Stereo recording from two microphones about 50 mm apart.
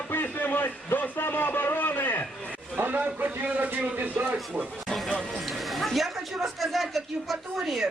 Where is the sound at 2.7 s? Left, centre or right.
Right.